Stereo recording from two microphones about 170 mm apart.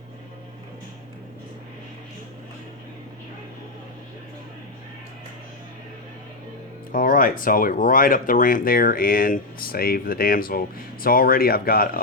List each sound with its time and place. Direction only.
6.9 s speech: 55° left (ahead or behind)